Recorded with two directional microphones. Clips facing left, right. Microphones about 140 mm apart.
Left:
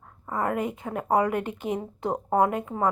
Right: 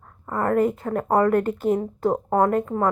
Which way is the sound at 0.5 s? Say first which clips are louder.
Right 8 dB; centre (ahead or behind).